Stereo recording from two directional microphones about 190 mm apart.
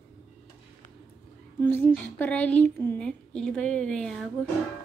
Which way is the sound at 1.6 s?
10° left (ahead or behind).